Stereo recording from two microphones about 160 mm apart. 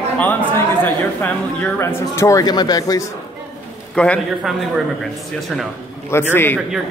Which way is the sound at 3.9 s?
5° left (ahead or behind).